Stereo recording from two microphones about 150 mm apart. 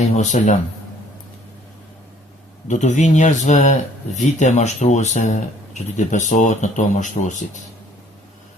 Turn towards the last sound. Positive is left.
turn(degrees=55)  # may be behind; listen again after turning